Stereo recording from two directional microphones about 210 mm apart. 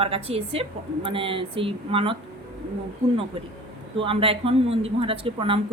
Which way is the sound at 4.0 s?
25° right (ahead or behind).